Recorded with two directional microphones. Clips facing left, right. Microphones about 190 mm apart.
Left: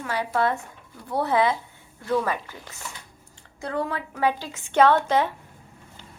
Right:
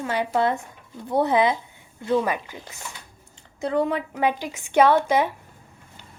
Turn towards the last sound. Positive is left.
turn(degrees=-15)  # may be behind; listen again after turning